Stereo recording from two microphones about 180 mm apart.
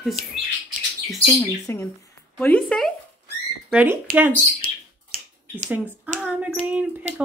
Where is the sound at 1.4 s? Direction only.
15° left (ahead or behind).